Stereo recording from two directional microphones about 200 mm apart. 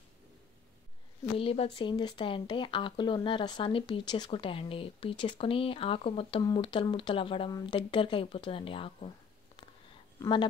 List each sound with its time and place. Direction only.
1.4 s speech: 30° left (ahead or behind)